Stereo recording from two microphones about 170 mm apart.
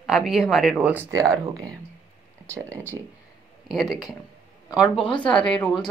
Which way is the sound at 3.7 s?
Centre (ahead or behind).